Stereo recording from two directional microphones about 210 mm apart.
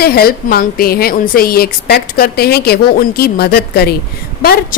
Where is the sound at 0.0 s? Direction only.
45° left (ahead or behind).